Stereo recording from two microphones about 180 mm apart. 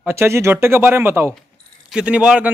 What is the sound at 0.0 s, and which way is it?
A man's voice, 15° right (ahead or behind).